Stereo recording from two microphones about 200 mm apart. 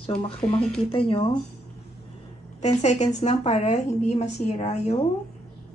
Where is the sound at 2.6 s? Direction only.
35° left (ahead or behind).